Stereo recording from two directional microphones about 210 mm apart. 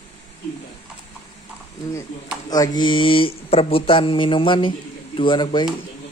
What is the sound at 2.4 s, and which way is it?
Speech, 20° left (ahead or behind).